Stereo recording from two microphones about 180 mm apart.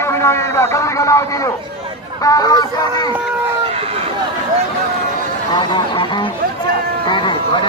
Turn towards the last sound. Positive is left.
turn(degrees=25)  # may be behind; listen again after turning